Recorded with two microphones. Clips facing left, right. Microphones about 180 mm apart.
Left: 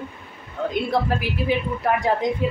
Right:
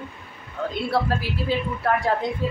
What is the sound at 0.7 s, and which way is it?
A woman's voice, 15° left (ahead or behind).